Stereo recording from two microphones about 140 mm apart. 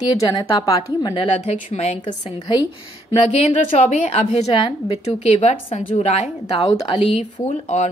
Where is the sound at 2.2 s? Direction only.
35° left (ahead or behind).